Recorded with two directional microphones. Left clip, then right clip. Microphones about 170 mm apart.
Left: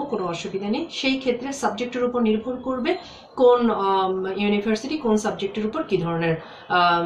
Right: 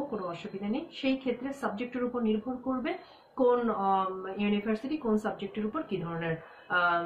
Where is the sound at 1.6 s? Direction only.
10° right (ahead or behind).